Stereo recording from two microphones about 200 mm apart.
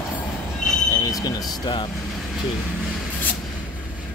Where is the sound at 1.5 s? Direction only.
20° left (ahead or behind).